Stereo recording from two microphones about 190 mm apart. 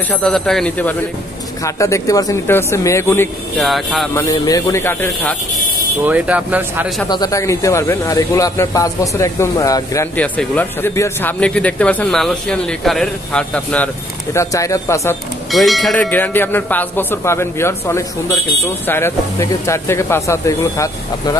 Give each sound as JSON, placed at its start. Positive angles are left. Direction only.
{"t": 0.1, "sound": "a man's voice", "side_deg": 5}
{"t": 3.6, "sound": "speech", "side_deg": 0}
{"t": 4.1, "sound": "a man's voice", "side_deg": 15}
{"t": 6.0, "sound": "speech", "side_deg": -5}
{"t": 7.1, "sound": "a man's voice", "side_deg": 20}
{"t": 15.5, "sound": "a man's voice", "side_deg": 0}